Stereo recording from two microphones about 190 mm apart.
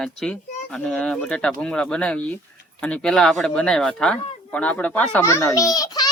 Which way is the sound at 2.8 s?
5° left (ahead or behind).